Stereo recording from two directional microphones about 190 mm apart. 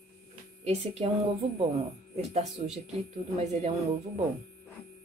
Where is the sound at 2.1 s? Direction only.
35° right (ahead or behind).